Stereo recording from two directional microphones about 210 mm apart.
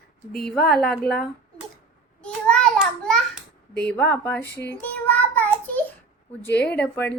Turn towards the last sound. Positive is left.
turn(degrees=5)  # may be behind; listen again after turning